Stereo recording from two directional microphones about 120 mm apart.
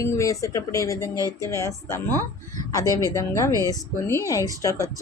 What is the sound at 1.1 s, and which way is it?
Speech, 30° right (ahead or behind).